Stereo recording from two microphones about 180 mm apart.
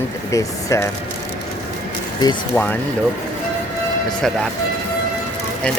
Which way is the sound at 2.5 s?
5° left (ahead or behind).